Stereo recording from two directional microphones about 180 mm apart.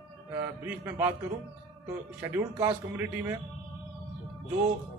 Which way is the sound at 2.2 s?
15° right (ahead or behind).